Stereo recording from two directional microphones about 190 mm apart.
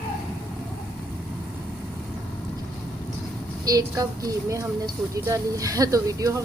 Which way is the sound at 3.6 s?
20° right (ahead or behind).